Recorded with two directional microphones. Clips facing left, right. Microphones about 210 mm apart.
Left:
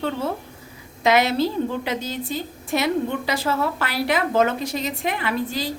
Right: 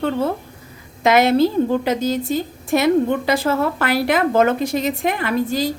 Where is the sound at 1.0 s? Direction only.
50° right (ahead or behind).